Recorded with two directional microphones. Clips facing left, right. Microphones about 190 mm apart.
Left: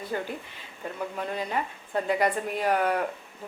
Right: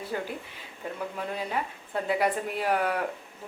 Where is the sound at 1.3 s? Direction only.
5° right (ahead or behind).